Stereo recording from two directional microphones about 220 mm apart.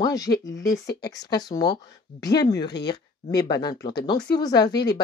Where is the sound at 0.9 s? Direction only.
50° left (ahead or behind).